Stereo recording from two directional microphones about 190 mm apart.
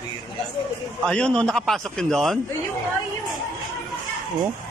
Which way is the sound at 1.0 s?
5° left (ahead or behind).